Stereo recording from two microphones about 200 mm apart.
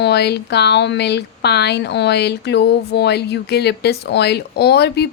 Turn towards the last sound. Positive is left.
turn(degrees=55)  # may be behind; listen again after turning